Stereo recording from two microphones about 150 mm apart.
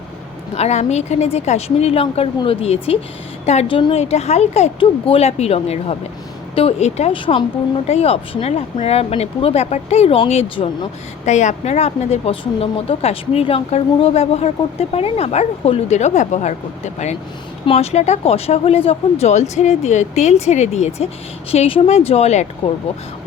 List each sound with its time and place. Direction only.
0.5 s a woman's voice: 45° left (ahead or behind)
11.3 s a woman's voice: 50° left (ahead or behind)